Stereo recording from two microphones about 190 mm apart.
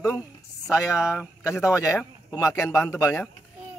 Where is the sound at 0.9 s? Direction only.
5° right (ahead or behind).